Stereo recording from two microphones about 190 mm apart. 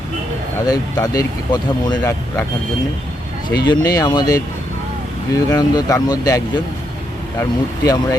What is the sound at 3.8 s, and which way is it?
Speech, 20° left (ahead or behind).